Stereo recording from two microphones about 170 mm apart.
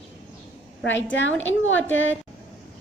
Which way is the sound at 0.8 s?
90° left.